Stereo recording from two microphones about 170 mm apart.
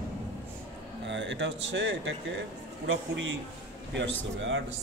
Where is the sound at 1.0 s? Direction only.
90° right.